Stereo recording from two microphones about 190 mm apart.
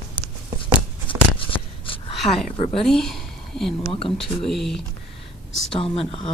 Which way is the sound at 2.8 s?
Centre (ahead or behind).